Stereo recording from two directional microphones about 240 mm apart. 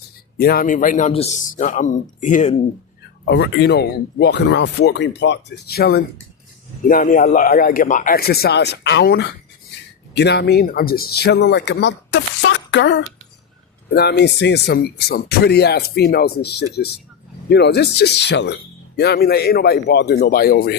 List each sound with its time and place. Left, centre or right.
0.3 s speech: left
3.2 s speech: left